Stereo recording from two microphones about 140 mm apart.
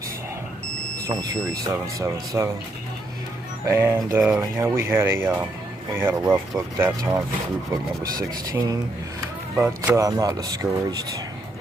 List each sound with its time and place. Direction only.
1.0 s speech: 25° right (ahead or behind)
3.6 s speech: 20° right (ahead or behind)